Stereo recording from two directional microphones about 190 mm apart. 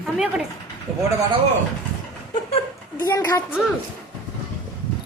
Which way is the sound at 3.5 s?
5° right (ahead or behind).